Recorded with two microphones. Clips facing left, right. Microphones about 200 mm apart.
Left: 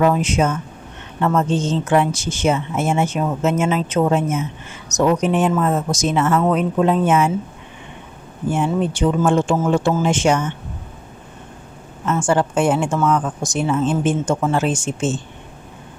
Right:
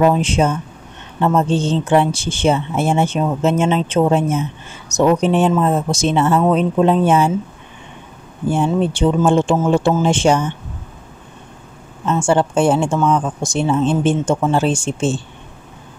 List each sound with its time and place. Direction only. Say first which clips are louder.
0.0 s speech: right 2 dB; 30° right (ahead or behind)
8.5 s speech: right 3 dB; 30° right (ahead or behind)
12.1 s speech: right 2 dB; 25° right (ahead or behind)